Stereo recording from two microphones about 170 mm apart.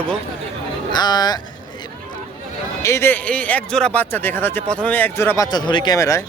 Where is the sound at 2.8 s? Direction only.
15° left (ahead or behind).